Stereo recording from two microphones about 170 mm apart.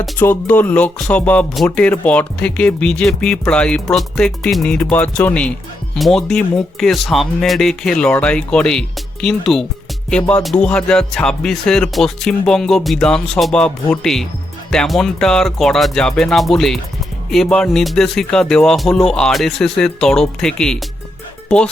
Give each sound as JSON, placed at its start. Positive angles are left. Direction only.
{"t": 0.2, "sound": "speech", "side_deg": 10}